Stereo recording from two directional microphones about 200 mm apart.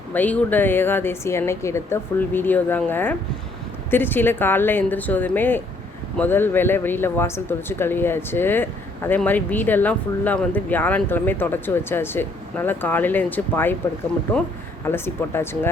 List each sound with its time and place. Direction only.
0.1 s speech: 10° left (ahead or behind)
14.8 s speech: 10° left (ahead or behind)